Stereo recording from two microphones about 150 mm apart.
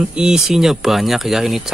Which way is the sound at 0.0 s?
5° right (ahead or behind).